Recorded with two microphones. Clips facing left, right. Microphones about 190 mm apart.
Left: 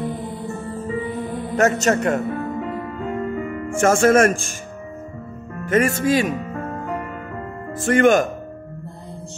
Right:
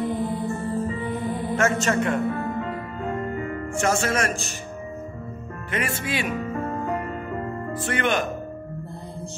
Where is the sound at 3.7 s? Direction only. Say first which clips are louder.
Left 9 dB; 50° left (ahead or behind).